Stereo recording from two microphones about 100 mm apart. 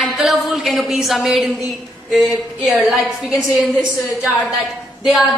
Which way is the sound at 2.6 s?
Centre (ahead or behind).